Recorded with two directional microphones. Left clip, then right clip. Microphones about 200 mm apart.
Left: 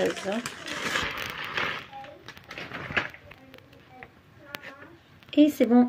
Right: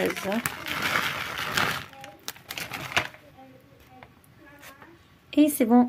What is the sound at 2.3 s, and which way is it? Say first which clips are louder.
Pigeon: right 6 dB; 65° right (ahead or behind).